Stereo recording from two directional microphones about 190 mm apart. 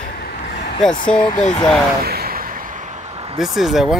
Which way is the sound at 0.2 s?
55° left (ahead or behind).